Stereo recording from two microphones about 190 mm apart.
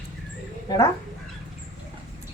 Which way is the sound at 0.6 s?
20° left (ahead or behind).